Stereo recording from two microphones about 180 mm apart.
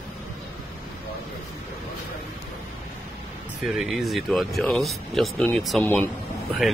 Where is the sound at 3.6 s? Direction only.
Centre (ahead or behind).